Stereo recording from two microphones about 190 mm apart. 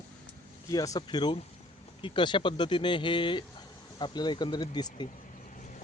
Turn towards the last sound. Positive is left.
turn(degrees=20)  # may be behind; listen again after turning